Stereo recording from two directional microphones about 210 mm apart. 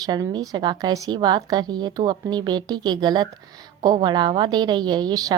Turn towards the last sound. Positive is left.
turn(degrees=-20)  # may be behind; listen again after turning